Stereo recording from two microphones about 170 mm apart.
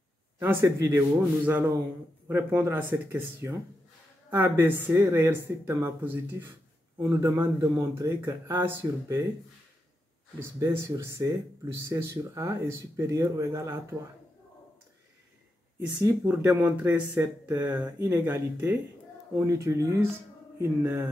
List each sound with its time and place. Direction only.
0.4 s speech: 15° right (ahead or behind)
10.6 s speech: 15° right (ahead or behind)
16.0 s speech: 15° right (ahead or behind)